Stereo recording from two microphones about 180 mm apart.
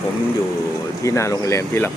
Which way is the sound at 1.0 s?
15° left (ahead or behind).